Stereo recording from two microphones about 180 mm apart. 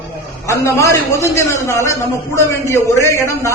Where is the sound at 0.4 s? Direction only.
15° left (ahead or behind).